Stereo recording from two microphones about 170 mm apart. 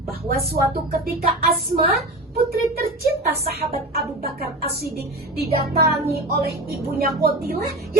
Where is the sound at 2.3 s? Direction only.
65° right (ahead or behind).